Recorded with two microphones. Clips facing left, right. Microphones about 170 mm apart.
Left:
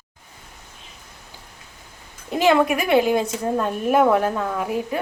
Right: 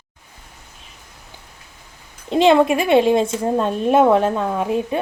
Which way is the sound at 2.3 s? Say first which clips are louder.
Right 4 dB; 25° right (ahead or behind).